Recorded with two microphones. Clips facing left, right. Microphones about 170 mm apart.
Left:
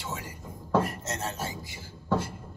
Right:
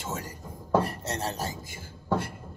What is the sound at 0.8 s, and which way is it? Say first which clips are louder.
Rub: right 2 dB; 30° right (ahead or behind).